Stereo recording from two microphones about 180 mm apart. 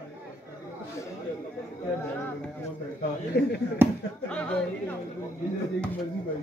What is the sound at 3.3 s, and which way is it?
Speech, 70° left (ahead or behind).